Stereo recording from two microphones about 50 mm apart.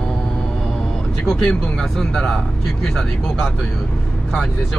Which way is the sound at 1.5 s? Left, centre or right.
Centre.